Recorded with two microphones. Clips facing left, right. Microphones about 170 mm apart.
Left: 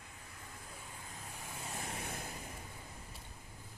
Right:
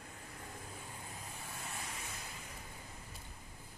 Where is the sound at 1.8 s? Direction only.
55° left (ahead or behind).